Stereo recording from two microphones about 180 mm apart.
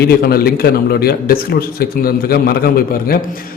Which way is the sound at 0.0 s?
60° left (ahead or behind).